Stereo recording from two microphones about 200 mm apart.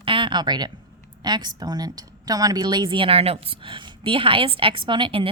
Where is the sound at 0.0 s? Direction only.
25° right (ahead or behind).